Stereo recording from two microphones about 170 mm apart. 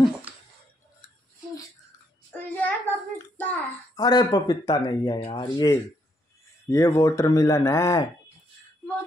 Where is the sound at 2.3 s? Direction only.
10° left (ahead or behind).